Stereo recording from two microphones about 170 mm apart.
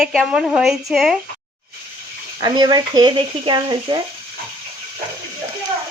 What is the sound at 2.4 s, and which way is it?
Speech, 25° right (ahead or behind).